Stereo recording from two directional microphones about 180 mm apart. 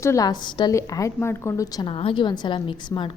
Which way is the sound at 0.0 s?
20° left (ahead or behind).